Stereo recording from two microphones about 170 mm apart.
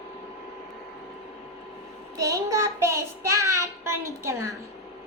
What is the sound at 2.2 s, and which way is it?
Child singing, 20° right (ahead or behind).